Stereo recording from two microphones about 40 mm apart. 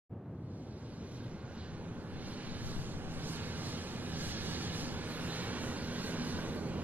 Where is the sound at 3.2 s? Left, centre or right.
Right.